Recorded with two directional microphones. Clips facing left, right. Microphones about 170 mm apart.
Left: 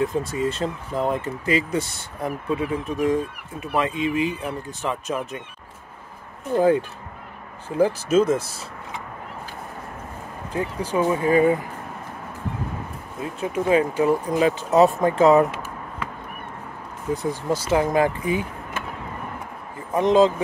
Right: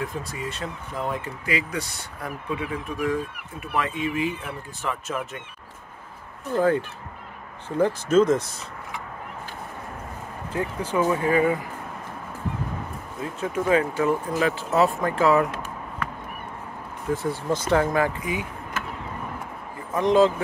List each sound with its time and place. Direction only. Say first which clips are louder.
0.0 s speech: left 8 dB; 25° left (ahead or behind)
6.5 s speech: left 3 dB; 15° left (ahead or behind)
10.5 s speech: left 2 dB; 15° left (ahead or behind)
11.0 s speech: left 3 dB; 25° left (ahead or behind)
13.6 s speech: left 2 dB; 15° left (ahead or behind)
17.1 s speech: left 1 dB; 15° left (ahead or behind)
18.2 s speech: left 5 dB; 30° left (ahead or behind)
19.9 s speech: left 2 dB; 20° left (ahead or behind)